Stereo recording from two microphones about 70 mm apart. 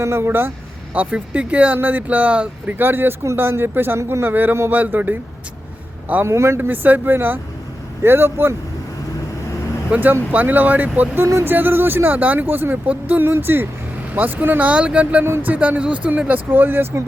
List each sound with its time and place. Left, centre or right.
0.0 s speech: right
0.9 s speech: centre; by 4.3 s right
4.3 s speech: right
6.2 s speech: right
6.6 s speech: right
9.9 s speech: right
11.2 s speech: right; by 15.2 s centre
15.2 s speech: right
16.5 s speech: right